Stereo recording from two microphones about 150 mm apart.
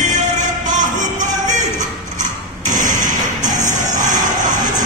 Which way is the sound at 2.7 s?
60° right (ahead or behind).